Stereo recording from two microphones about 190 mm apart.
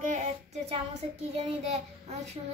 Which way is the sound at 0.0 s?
35° right (ahead or behind).